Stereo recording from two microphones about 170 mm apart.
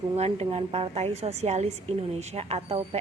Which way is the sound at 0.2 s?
40° right (ahead or behind).